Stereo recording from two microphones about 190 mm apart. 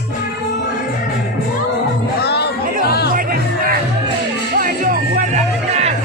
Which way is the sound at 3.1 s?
50° right (ahead or behind).